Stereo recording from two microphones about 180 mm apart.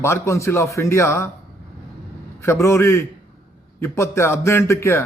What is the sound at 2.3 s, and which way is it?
A man's voice, 15° left (ahead or behind).